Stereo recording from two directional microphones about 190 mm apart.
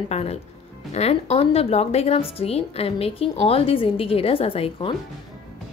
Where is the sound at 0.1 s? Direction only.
35° left (ahead or behind).